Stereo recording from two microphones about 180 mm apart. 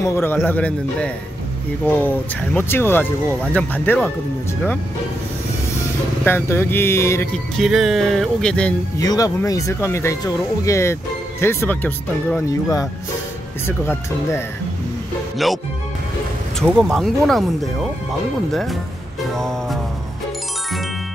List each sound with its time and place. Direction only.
0.0 s speech: 15° left (ahead or behind)
6.2 s speech: 10° left (ahead or behind)
7.5 s speech: centre (ahead or behind)
8.9 s speech: 20° left (ahead or behind)
15.3 s speech: centre (ahead or behind)
18.5 s speech: centre (ahead or behind)
19.3 s music: centre (ahead or behind)